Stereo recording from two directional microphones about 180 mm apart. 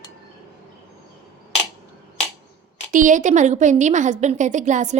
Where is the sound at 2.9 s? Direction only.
45° right (ahead or behind).